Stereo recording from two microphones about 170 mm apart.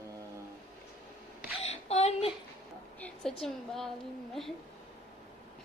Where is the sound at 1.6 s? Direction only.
40° left (ahead or behind).